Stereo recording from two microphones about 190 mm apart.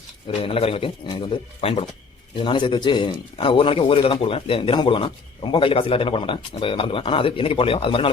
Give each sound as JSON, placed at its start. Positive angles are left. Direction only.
{"t": 0.4, "sound": "a man's voice", "side_deg": 30}